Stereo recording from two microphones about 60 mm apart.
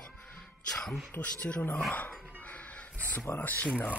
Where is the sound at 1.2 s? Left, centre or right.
Left.